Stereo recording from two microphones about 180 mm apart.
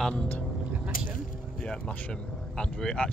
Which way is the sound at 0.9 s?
50° left (ahead or behind).